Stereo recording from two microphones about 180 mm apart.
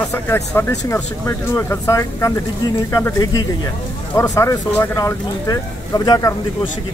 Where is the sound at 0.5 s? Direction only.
15° left (ahead or behind).